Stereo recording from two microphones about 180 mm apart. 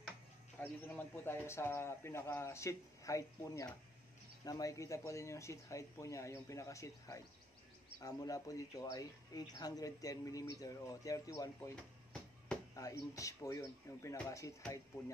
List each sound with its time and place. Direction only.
0.6 s speech: 10° left (ahead or behind)
11.7 s a sound: 5° left (ahead or behind)
12.7 s speech: 20° left (ahead or behind)